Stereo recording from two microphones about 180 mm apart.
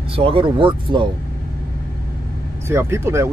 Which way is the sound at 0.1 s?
30° right (ahead or behind).